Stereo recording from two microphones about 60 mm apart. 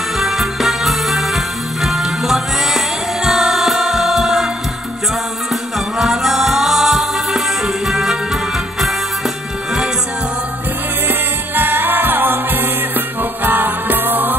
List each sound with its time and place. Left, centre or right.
0.2 s music: centre
5.5 s music: centre
11.1 s music: right